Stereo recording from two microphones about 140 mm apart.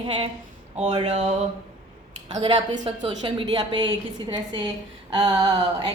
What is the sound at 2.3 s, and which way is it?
A woman's voice, 35° right (ahead or behind).